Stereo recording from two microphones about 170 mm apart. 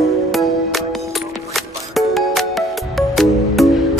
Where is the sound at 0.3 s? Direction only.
Centre (ahead or behind).